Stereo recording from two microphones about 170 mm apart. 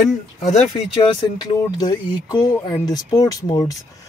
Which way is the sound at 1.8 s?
25° left (ahead or behind).